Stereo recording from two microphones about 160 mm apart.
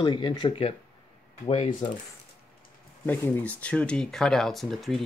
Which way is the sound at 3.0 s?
10° left (ahead or behind).